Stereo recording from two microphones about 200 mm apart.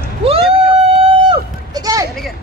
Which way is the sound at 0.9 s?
20° right (ahead or behind).